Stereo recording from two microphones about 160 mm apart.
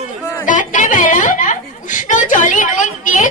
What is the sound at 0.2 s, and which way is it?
Chatter, 15° left (ahead or behind).